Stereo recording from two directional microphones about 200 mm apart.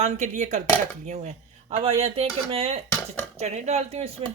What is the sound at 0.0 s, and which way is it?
Speech, 35° right (ahead or behind).